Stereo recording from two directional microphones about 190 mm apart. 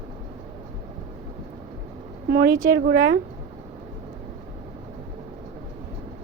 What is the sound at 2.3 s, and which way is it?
Speech, 55° right (ahead or behind).